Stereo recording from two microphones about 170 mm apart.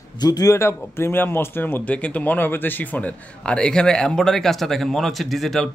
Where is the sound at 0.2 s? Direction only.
20° left (ahead or behind).